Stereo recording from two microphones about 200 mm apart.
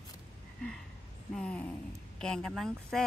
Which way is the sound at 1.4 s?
5° left (ahead or behind).